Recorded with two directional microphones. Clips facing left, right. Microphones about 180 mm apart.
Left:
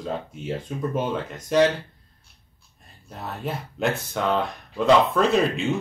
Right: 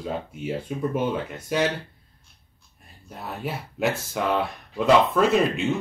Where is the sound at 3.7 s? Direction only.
5° right (ahead or behind).